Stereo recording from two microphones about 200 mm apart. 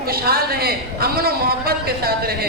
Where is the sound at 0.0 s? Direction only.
50° right (ahead or behind).